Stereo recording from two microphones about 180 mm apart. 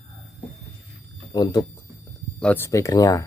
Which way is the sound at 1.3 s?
25° left (ahead or behind).